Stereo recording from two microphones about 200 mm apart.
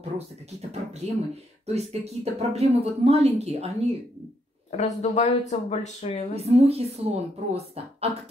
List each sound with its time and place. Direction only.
0.6 s speech: 35° right (ahead or behind)
4.6 s speech: 35° left (ahead or behind)
6.3 s speech: 30° right (ahead or behind)